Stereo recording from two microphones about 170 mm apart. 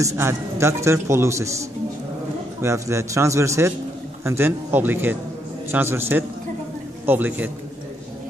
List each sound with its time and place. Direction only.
0.0 s a man's voice: 15° right (ahead or behind)